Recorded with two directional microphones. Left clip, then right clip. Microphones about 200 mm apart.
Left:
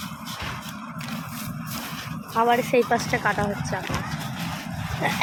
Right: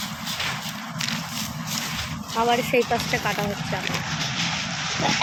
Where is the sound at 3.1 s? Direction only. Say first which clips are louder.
Left 1 dB; centre (ahead or behind).